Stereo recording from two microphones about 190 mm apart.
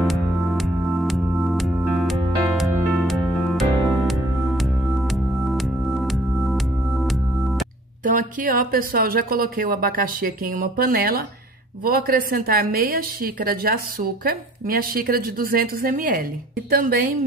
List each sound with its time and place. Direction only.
0.0 s music: centre (ahead or behind)
8.0 s a woman's voice: 45° right (ahead or behind)